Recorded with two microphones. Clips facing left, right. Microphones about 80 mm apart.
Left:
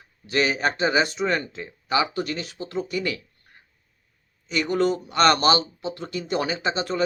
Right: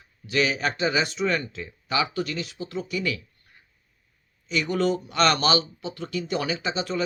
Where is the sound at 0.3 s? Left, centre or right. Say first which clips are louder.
Left 2 dB; left.